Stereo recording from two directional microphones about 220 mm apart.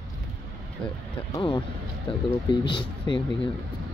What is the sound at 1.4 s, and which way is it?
Speech, 20° left (ahead or behind).